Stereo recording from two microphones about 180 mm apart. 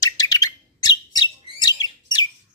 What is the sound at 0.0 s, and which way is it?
Bird, 20° left (ahead or behind).